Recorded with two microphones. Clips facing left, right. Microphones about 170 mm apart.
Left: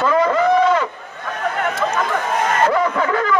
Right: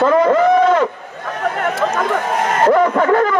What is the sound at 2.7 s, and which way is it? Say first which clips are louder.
Speech: right 6 dB; 45° right (ahead or behind).